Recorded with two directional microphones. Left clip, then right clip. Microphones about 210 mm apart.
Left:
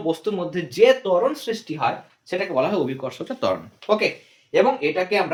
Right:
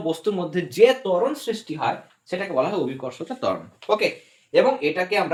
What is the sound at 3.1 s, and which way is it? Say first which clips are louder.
Speech: left 3 dB; 35° left (ahead or behind).